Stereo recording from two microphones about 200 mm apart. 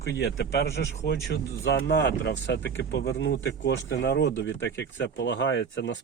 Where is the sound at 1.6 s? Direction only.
60° left (ahead or behind).